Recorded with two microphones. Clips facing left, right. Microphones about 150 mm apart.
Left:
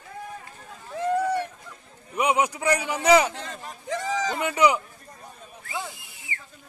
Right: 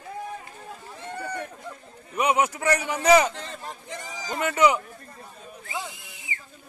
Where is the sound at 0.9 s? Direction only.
90° left.